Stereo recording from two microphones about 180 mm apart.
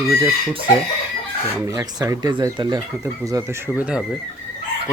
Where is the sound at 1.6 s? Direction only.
20° right (ahead or behind).